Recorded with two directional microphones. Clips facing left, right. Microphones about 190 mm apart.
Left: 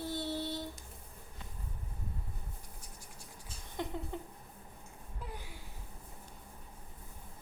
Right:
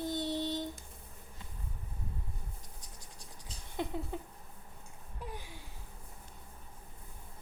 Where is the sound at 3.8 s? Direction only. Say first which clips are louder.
Right 2 dB; 15° right (ahead or behind).